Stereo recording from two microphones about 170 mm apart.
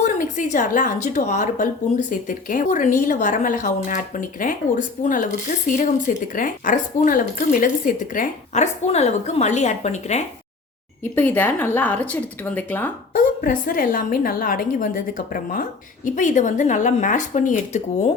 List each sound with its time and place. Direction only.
0.0 s speech: 45° left (ahead or behind)
11.1 s a woman's voice: 10° left (ahead or behind)
13.1 s a woman's voice: 55° left (ahead or behind)